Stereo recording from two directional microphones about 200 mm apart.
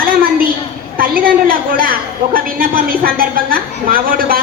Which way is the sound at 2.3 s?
45° right (ahead or behind).